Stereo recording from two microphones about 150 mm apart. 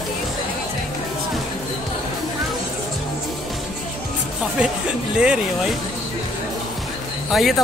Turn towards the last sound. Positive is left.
turn(degrees=0)  # may be behind; listen again after turning